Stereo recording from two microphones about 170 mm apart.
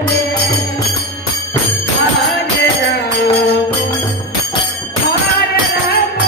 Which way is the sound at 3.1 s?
75° left (ahead or behind).